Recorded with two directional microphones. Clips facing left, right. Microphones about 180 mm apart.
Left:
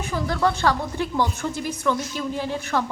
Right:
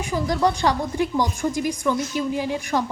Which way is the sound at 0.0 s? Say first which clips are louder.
Right 2 dB; 15° right (ahead or behind).